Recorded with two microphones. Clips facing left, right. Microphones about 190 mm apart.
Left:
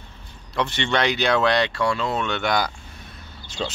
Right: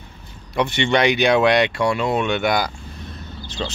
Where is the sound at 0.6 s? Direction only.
15° right (ahead or behind).